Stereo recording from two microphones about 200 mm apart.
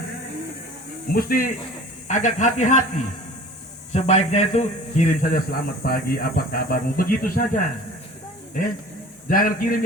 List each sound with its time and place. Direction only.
1.1 s a man's voice: 45° left (ahead or behind)
9.2 s a man's voice: 45° left (ahead or behind)